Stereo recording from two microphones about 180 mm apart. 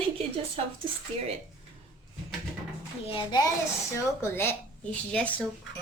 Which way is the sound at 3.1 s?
25° left (ahead or behind).